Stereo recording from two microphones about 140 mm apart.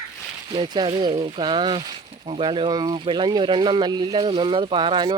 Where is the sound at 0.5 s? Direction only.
35° right (ahead or behind).